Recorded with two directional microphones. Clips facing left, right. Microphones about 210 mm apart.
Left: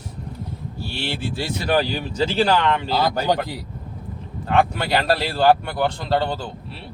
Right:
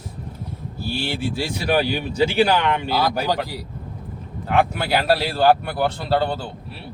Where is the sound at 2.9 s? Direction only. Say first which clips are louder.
Left 1 dB; 25° left (ahead or behind).